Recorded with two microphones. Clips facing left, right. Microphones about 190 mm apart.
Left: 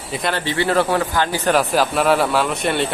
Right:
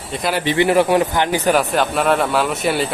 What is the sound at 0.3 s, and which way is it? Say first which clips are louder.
A man's voice: right 4 dB; 15° right (ahead or behind).